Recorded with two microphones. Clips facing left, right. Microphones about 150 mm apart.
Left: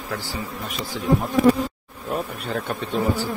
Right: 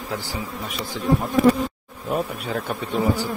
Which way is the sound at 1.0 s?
Centre (ahead or behind).